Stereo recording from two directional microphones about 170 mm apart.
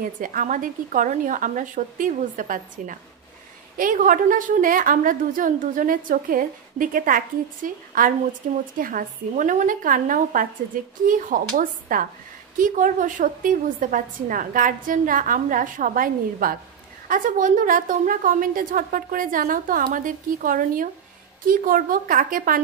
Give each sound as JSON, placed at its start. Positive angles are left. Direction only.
{"t": 0.2, "sound": "a woman's voice", "side_deg": -50}